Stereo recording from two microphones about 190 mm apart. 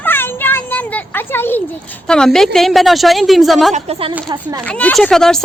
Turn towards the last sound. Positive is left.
turn(degrees=0)  # may be behind; listen again after turning